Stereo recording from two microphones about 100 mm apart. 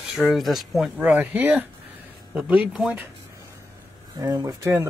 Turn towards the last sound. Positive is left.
turn(degrees=-30)  # may be behind; listen again after turning